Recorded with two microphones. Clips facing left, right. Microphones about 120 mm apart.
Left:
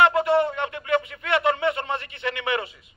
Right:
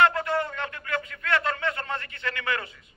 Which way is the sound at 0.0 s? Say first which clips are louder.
Left 4 dB; 20° left (ahead or behind).